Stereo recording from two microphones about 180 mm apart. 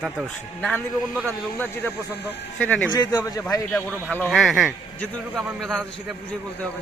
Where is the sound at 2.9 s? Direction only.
20° left (ahead or behind).